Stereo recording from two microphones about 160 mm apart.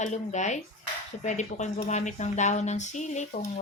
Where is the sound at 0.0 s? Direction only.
50° left (ahead or behind).